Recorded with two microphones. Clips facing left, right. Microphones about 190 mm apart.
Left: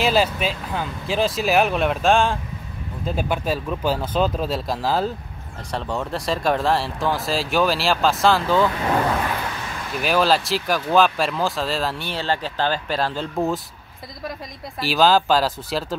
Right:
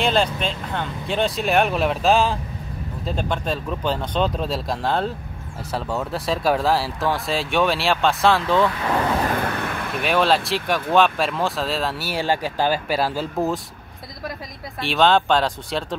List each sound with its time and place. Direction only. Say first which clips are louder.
0.0 s speech: left 1 dB; 5° left (ahead or behind)
9.5 s a sound: right 5 dB; 60° right (ahead or behind)
9.9 s speech: left 1 dB; centre (ahead or behind)
14.8 s speech: even; centre (ahead or behind)